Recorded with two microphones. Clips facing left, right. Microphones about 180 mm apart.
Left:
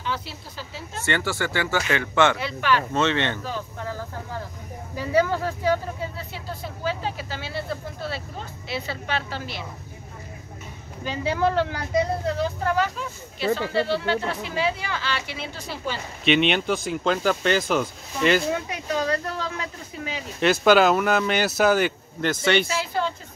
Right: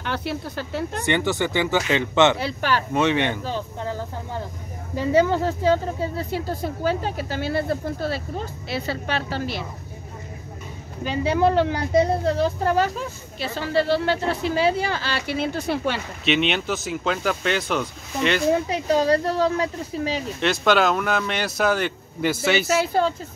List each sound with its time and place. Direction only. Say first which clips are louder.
0.0 s speech: right 4 dB; 65° right (ahead or behind)
1.0 s speech: right 2 dB; 20° right (ahead or behind)
2.3 s speech: even; 35° right (ahead or behind)
2.9 s speech: right 2 dB; 15° right (ahead or behind)
3.4 s speech: right 3 dB; 25° right (ahead or behind)
6.1 s speech: right 8 dB; 45° right (ahead or behind)
11.1 s speech: right 4 dB; 15° right (ahead or behind)
12.6 s speech: right 3 dB; 35° right (ahead or behind); by 16.0 s 65° right (ahead or behind)
16.3 s speech: left 2 dB; centre (ahead or behind)
18.5 s speech: right 6 dB; 30° right (ahead or behind)
20.3 s speech: left 3 dB; centre (ahead or behind)